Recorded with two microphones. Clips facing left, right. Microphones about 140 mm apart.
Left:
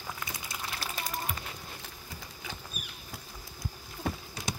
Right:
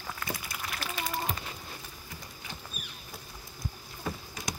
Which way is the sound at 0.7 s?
35° left (ahead or behind).